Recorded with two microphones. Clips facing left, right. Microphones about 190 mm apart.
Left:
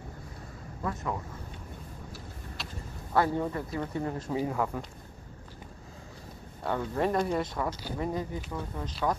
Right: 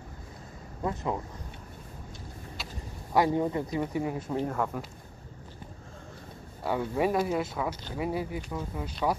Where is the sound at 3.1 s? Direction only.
15° right (ahead or behind).